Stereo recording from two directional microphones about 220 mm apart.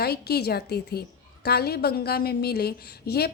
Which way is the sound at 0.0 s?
45° left (ahead or behind).